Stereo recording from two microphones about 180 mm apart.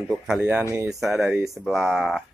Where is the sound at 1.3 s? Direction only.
15° right (ahead or behind).